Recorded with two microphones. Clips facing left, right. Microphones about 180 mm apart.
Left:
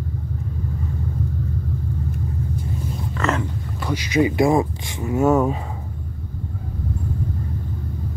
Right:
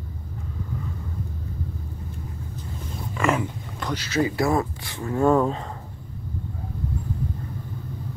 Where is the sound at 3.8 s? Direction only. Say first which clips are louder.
Left 5 dB; 15° left (ahead or behind).